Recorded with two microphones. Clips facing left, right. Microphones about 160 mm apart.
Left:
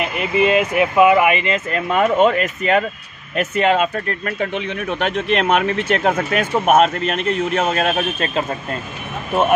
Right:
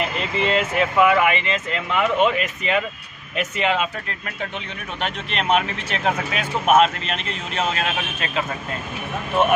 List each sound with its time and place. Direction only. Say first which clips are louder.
0.0 s speech: left 5 dB; 10° left (ahead or behind)
1.7 s speech: left 5 dB; 45° left (ahead or behind)